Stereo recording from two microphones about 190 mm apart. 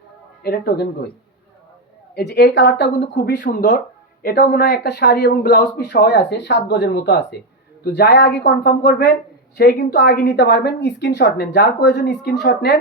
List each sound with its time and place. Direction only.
0.4 s a woman's voice: 55° left (ahead or behind)
2.1 s a woman's voice: 60° left (ahead or behind)
3.2 s a woman's voice: 50° left (ahead or behind)